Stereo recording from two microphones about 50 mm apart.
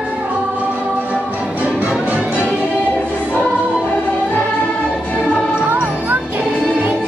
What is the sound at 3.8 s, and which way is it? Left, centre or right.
Music, left.